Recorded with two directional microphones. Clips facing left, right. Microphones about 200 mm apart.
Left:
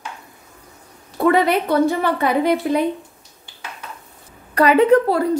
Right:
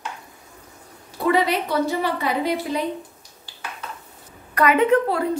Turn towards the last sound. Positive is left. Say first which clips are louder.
# left 4 dB
turn(degrees=35)  # may be behind; listen again after turning